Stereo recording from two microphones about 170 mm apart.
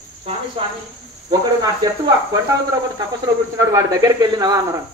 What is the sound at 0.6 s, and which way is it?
Speech, 30° right (ahead or behind).